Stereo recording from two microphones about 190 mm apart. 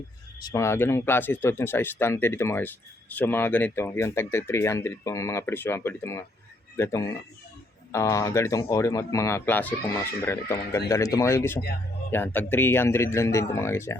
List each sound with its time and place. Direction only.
0.3 s speech: 20° left (ahead or behind)